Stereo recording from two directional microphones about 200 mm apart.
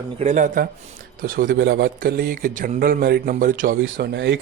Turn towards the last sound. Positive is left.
turn(degrees=-60)  # may be behind; listen again after turning